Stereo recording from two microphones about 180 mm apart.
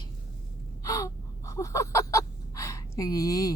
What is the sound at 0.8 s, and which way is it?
Gasp, 20° left (ahead or behind).